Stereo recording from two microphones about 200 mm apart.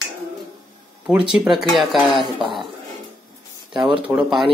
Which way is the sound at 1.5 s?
Centre (ahead or behind).